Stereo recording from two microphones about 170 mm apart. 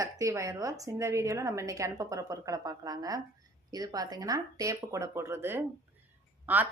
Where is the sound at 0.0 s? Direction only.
20° right (ahead or behind).